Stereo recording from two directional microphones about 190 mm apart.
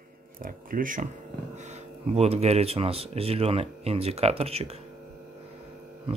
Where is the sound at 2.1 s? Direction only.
35° right (ahead or behind).